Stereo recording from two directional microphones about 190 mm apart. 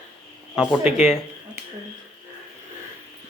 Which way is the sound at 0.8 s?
35° left (ahead or behind).